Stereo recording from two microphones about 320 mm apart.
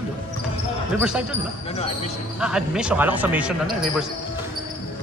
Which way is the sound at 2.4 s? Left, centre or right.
Centre.